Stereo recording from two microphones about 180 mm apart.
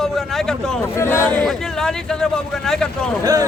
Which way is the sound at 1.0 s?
15° left (ahead or behind).